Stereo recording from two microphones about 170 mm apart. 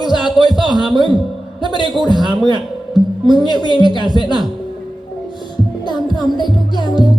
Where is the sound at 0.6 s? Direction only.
30° right (ahead or behind).